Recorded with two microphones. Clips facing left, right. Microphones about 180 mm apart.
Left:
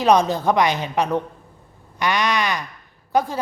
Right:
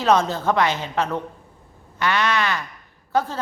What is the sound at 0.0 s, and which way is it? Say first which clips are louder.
A woman's voice: left 2 dB; 15° left (ahead or behind).